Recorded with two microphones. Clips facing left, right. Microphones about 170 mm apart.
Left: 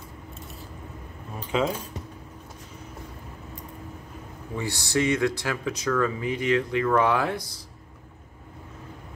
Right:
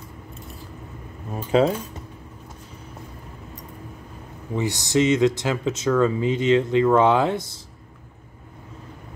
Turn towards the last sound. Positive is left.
turn(degrees=-25)  # may be behind; listen again after turning